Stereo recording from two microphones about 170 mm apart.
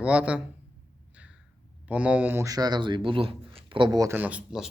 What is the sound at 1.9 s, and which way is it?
Speech, 10° right (ahead or behind).